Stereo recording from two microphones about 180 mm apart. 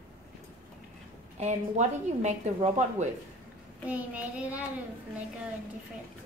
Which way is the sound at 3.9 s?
10° right (ahead or behind).